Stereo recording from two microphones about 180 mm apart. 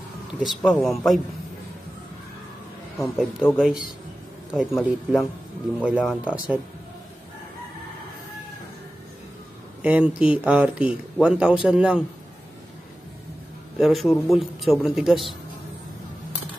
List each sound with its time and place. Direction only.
0.6 s speech: 5° left (ahead or behind)
3.0 s a man's voice: 5° right (ahead or behind)
9.8 s a man's voice: 5° right (ahead or behind)
13.7 s speech: centre (ahead or behind)